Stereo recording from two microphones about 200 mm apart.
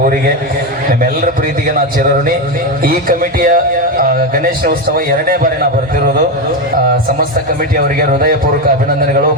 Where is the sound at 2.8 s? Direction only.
45° right (ahead or behind).